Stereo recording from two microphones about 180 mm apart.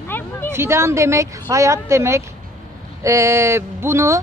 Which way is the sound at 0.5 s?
15° right (ahead or behind).